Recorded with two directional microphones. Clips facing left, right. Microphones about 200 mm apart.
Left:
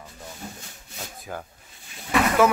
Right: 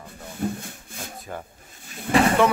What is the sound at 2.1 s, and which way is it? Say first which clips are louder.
Vehicle: right 4 dB; 55° right (ahead or behind).